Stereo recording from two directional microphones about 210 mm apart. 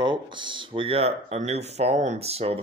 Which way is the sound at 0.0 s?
20° right (ahead or behind).